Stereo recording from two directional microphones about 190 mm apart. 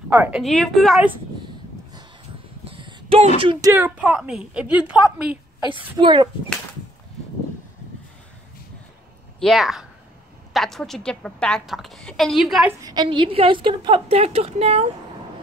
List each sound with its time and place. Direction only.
0.1 s a woman's voice: 5° right (ahead or behind)
2.7 s a sound: 30° right (ahead or behind)
3.3 s a woman's voice: 25° right (ahead or behind)
3.7 s a woman's voice: 10° right (ahead or behind)
5.9 s a woman's voice: 25° right (ahead or behind)
9.4 s a woman's voice: centre (ahead or behind)
12.8 s a woman's voice: 25° right (ahead or behind)